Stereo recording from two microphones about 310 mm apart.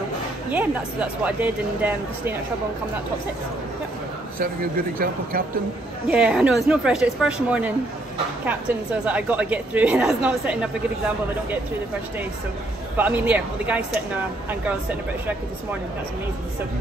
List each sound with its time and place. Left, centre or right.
0.5 s speech: centre
4.9 s speech: right
6.0 s speech: centre
9.0 s speech: centre
12.9 s speech: centre